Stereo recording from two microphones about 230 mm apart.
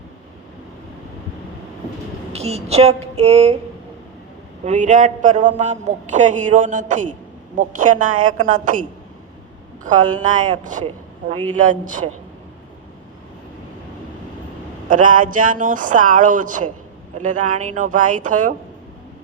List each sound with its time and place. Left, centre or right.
2.3 s speech: right
4.6 s a man's voice: right
10.3 s speech: centre
10.6 s a man's voice: right
14.8 s a man's voice: right